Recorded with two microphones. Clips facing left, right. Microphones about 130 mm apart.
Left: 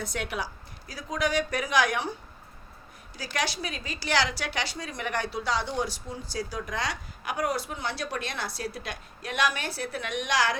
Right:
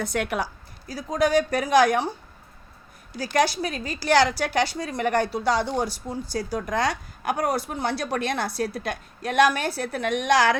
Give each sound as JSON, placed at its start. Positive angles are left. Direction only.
{"t": 0.0, "sound": "a woman's voice", "side_deg": -55}
{"t": 0.9, "sound": "a woman's voice", "side_deg": -35}
{"t": 3.2, "sound": "a woman's voice", "side_deg": -45}